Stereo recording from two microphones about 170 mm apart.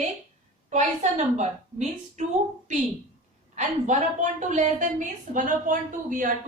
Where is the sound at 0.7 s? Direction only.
45° right (ahead or behind).